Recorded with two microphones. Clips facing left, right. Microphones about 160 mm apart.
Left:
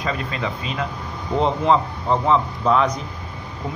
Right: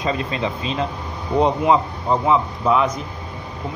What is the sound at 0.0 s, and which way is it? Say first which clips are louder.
Speech: right 3 dB; 20° right (ahead or behind).